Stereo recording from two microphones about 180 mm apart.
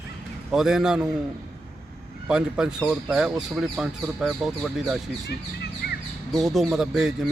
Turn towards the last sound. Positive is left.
turn(degrees=-5)  # may be behind; listen again after turning